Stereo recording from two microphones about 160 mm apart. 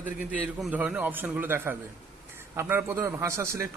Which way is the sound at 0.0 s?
10° right (ahead or behind).